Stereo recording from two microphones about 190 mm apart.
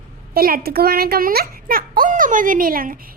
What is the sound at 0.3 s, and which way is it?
A woman's voice, 50° right (ahead or behind).